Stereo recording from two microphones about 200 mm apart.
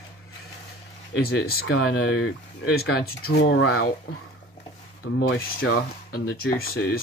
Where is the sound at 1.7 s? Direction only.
90° left.